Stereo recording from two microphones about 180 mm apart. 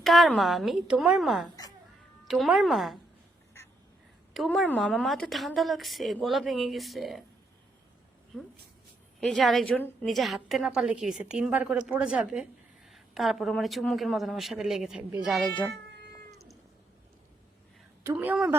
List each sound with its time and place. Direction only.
0.0 s a woman's voice: centre (ahead or behind)
4.4 s a woman's voice: centre (ahead or behind)
9.2 s a woman's voice: centre (ahead or behind)
15.7 s cat: 70° right (ahead or behind)
18.0 s a woman's voice: 15° right (ahead or behind)